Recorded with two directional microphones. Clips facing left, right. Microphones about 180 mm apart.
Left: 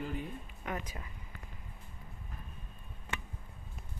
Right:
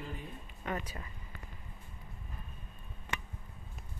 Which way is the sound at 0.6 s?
10° left (ahead or behind).